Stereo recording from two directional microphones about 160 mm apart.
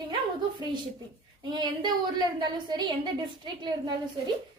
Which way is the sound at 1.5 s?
25° right (ahead or behind).